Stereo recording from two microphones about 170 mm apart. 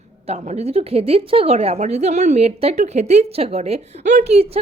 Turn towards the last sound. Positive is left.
turn(degrees=-35)  # may be behind; listen again after turning